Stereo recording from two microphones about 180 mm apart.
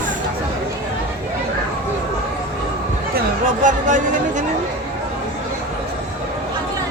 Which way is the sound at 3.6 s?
45° right (ahead or behind).